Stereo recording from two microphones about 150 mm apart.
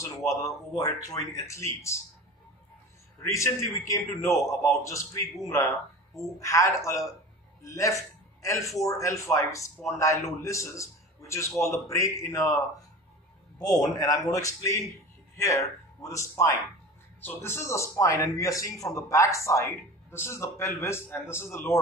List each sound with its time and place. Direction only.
0.4 s a man's voice: 20° left (ahead or behind)
3.3 s a man's voice: 20° left (ahead or behind)
13.6 s a man's voice: 25° left (ahead or behind)